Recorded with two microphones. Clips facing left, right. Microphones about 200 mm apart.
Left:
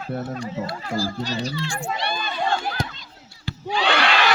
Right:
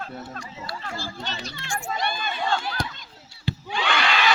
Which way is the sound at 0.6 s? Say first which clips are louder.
Left 8 dB; 45° left (ahead or behind).